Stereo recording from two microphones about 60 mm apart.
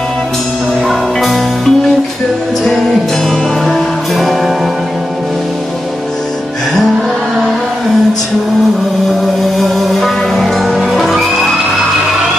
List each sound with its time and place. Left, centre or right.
0.8 s music: centre
3.3 s music: centre
9.6 s music: centre